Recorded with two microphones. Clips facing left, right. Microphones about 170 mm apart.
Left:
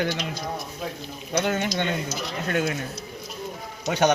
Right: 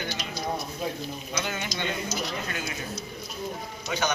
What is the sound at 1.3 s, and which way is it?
Speech, 55° left (ahead or behind).